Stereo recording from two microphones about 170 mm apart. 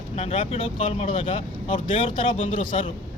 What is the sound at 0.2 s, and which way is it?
A man's voice, 40° left (ahead or behind).